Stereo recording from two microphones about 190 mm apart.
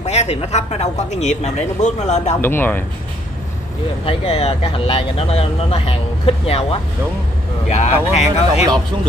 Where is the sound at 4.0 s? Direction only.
30° left (ahead or behind).